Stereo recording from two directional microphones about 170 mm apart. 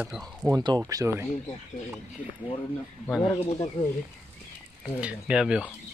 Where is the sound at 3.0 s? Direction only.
10° left (ahead or behind).